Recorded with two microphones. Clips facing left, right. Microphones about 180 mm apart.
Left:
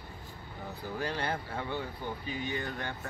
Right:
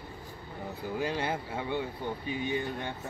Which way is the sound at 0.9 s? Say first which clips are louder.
Right 2 dB; 10° right (ahead or behind).